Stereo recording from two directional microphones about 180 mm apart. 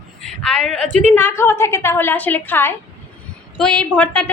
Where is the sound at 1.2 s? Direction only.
15° left (ahead or behind).